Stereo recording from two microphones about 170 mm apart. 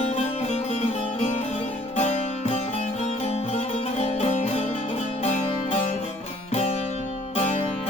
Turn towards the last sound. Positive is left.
turn(degrees=40)  # may be behind; listen again after turning